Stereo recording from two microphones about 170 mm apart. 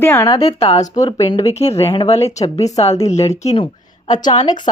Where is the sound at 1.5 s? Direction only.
40° left (ahead or behind).